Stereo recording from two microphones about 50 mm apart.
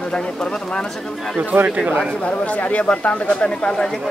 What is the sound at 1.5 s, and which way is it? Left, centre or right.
Speech, right.